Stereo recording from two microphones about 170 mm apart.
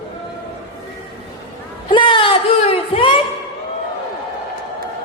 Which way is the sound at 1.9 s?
30° left (ahead or behind).